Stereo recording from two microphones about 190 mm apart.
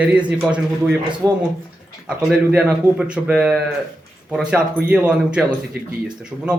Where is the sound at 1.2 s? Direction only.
15° right (ahead or behind).